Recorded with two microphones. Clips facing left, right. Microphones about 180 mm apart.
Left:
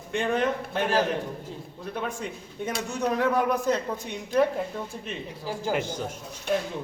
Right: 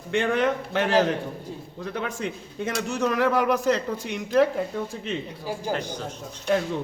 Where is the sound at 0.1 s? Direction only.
85° right.